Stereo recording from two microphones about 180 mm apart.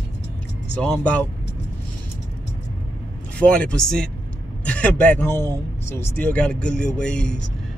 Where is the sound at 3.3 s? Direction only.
5° left (ahead or behind).